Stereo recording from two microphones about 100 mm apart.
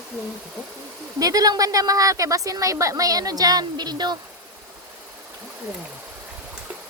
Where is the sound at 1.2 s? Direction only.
40° right (ahead or behind).